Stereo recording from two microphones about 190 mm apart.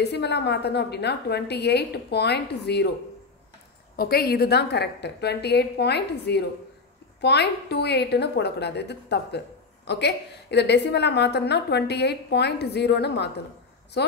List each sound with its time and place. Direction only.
0.0 s a woman's voice: 60° left (ahead or behind)
3.9 s a woman's voice: 55° left (ahead or behind)